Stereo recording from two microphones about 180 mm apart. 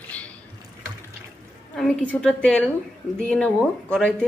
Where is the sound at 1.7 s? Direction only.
5° left (ahead or behind).